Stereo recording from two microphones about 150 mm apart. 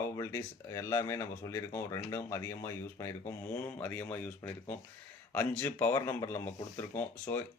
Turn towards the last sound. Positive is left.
turn(degrees=15)  # may be behind; listen again after turning